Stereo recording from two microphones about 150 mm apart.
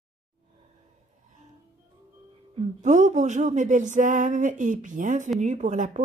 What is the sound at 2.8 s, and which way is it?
A woman's voice, 55° right (ahead or behind).